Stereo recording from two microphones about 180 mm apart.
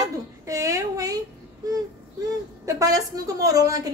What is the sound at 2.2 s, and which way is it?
A woman's voice, 20° right (ahead or behind).